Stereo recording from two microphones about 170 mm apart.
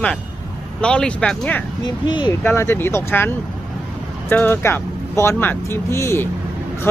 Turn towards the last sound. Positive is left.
turn(degrees=15)  # may be behind; listen again after turning